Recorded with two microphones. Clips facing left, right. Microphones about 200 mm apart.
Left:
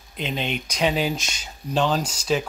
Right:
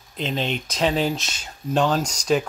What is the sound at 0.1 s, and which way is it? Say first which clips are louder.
Speech: right 2 dB; 5° left (ahead or behind).